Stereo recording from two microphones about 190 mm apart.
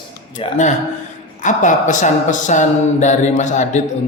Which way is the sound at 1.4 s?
40° left (ahead or behind).